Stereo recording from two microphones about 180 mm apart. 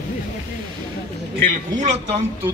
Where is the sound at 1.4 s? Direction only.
45° right (ahead or behind).